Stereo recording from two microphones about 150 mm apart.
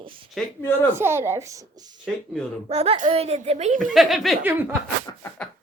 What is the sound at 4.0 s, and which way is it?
Speech, centre (ahead or behind).